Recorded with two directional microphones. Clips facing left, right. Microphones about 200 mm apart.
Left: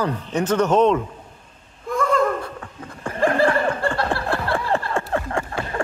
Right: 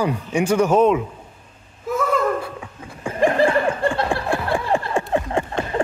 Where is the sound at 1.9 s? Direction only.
5° right (ahead or behind).